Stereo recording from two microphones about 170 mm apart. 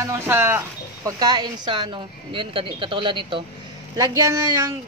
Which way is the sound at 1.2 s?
25° right (ahead or behind).